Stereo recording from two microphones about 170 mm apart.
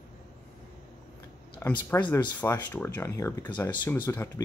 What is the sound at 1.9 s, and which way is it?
Speech, 25° left (ahead or behind).